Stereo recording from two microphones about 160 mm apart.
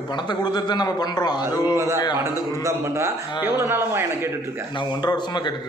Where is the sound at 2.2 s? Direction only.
20° right (ahead or behind).